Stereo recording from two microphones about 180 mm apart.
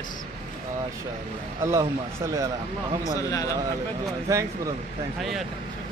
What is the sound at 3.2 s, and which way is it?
Speech, 20° left (ahead or behind).